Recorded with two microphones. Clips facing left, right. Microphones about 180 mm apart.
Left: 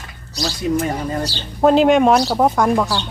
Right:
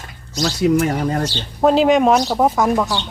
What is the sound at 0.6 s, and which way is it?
Speech, 75° right (ahead or behind).